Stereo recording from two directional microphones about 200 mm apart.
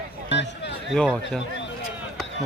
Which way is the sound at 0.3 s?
60° left (ahead or behind).